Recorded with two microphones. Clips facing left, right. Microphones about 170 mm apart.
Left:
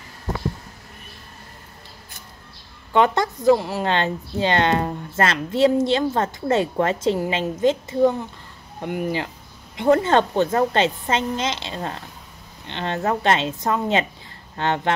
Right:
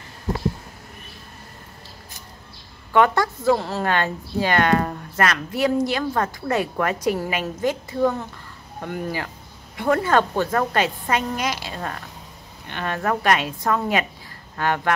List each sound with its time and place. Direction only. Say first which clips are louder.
2.9 s a woman's voice: even; 20° left (ahead or behind)